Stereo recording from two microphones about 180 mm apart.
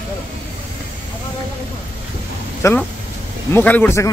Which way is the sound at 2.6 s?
10° left (ahead or behind).